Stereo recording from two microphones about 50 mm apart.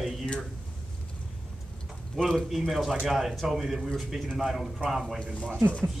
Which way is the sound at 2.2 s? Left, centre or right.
Centre.